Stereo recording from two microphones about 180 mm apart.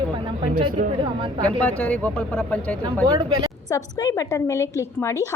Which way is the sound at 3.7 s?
20° left (ahead or behind).